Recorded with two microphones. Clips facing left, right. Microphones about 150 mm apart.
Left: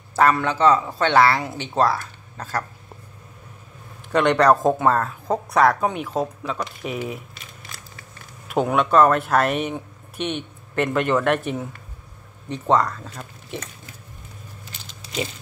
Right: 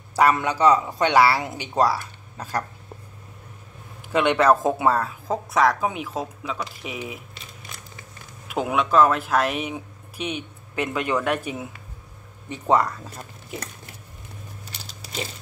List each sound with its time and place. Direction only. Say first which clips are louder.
0.1 s speech: left 1 dB; 15° right (ahead or behind)
4.1 s speech: left 2 dB; 5° right (ahead or behind)
7.7 s a sound: left 1 dB; 20° right (ahead or behind)
8.5 s speech: left 3 dB; centre (ahead or behind)